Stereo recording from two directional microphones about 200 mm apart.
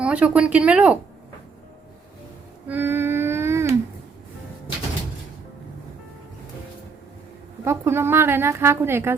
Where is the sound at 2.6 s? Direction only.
10° right (ahead or behind).